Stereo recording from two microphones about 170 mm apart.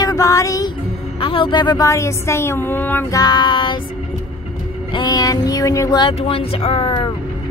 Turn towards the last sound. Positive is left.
turn(degrees=30)  # may be behind; listen again after turning